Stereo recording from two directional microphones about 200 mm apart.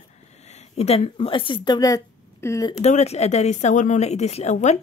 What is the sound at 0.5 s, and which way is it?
Speech, 35° left (ahead or behind).